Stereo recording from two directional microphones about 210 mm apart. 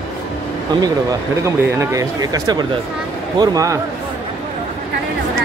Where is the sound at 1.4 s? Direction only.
15° right (ahead or behind).